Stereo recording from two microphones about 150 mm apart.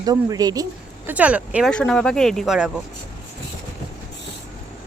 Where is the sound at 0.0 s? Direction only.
25° right (ahead or behind).